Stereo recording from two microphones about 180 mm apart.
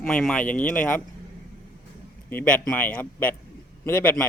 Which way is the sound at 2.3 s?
10° left (ahead or behind).